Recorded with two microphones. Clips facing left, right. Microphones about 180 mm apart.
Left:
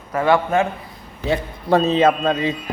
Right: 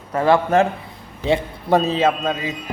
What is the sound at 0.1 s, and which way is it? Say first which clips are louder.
A man's voice: right 1 dB; 30° right (ahead or behind).